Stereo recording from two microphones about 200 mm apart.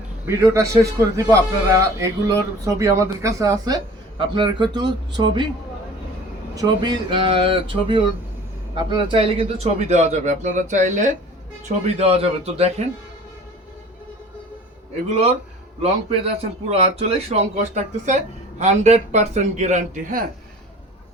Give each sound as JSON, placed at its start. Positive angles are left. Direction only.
{"t": 0.3, "sound": "a man's voice", "side_deg": -15}
{"t": 6.6, "sound": "a man's voice", "side_deg": -20}
{"t": 15.8, "sound": "a man's voice", "side_deg": -30}